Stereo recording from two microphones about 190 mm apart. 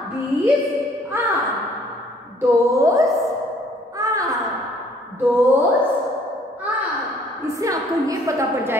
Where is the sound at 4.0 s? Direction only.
15° right (ahead or behind).